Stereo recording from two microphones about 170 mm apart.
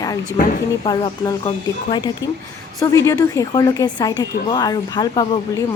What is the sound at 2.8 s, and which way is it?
Speech, 20° left (ahead or behind).